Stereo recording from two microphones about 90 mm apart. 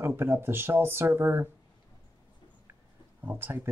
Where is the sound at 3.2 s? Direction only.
25° right (ahead or behind).